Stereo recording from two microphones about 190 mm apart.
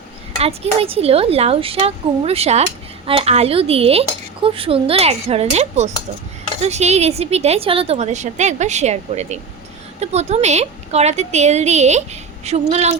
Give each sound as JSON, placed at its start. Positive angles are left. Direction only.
{"t": 0.3, "sound": "a woman's voice", "side_deg": -30}